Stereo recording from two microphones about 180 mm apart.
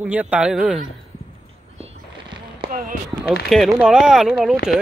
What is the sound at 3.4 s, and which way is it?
Speech, centre (ahead or behind).